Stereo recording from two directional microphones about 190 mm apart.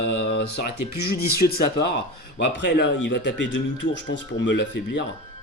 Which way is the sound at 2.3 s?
60° left (ahead or behind).